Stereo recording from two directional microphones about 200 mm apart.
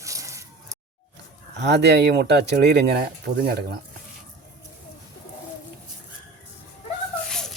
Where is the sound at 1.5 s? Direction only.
60° right (ahead or behind).